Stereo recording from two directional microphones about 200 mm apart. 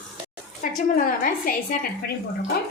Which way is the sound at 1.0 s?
45° left (ahead or behind).